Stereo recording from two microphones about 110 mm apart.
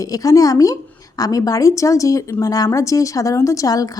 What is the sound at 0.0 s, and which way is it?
Speech, 30° left (ahead or behind).